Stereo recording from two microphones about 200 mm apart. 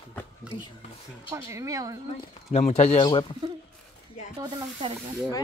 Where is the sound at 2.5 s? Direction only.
35° left (ahead or behind).